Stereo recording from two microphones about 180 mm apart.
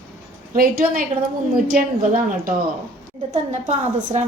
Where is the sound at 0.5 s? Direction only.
55° right (ahead or behind).